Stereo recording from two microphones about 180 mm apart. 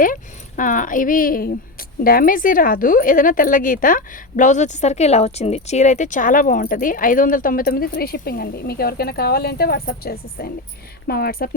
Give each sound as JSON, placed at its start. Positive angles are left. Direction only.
{"t": 0.0, "sound": "a woman's voice", "side_deg": 45}